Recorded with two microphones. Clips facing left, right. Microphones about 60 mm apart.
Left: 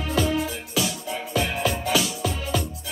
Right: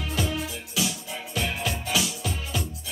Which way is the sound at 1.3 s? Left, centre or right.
Left.